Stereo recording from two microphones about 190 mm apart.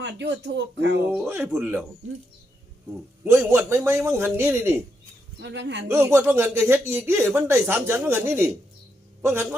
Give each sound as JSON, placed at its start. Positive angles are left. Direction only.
{"t": 0.0, "sound": "speech", "side_deg": -65}
{"t": 1.1, "sound": "speech", "side_deg": -10}
{"t": 3.2, "sound": "speech", "side_deg": -10}
{"t": 5.4, "sound": "speech", "side_deg": -65}
{"t": 5.9, "sound": "speech", "side_deg": -10}